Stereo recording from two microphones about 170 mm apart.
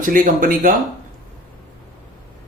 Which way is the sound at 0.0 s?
50° right (ahead or behind).